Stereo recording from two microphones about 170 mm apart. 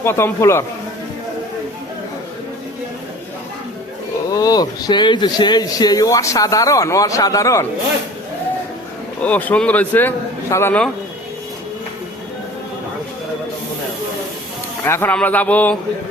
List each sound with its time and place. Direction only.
0.0 s a man's voice: 15° left (ahead or behind)
4.3 s speech: 20° left (ahead or behind)
9.2 s a man's voice: 10° left (ahead or behind)
14.8 s a man's voice: 15° left (ahead or behind)